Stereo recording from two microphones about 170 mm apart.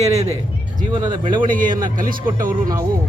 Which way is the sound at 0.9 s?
25° right (ahead or behind).